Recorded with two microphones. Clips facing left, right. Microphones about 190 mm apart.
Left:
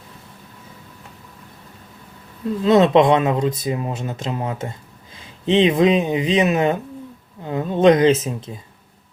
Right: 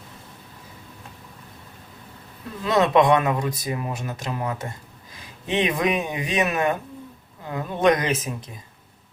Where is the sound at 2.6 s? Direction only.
25° left (ahead or behind).